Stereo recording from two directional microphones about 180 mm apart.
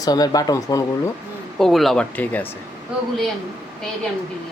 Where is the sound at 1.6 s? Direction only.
Centre (ahead or behind).